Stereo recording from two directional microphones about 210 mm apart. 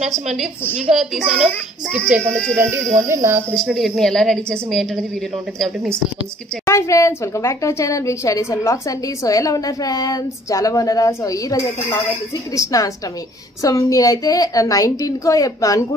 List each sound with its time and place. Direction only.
0.0 s a child's voice: centre (ahead or behind)
3.5 s a child's voice: centre (ahead or behind)
6.6 s a woman's voice: 15° left (ahead or behind)